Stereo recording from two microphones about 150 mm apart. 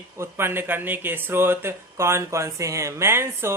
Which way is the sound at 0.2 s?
15° right (ahead or behind).